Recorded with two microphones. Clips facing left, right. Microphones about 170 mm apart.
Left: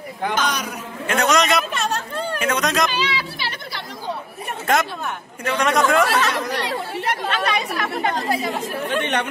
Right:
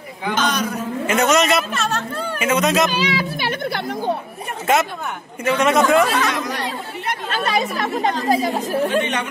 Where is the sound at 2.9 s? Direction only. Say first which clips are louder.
Right 4 dB; 45° right (ahead or behind).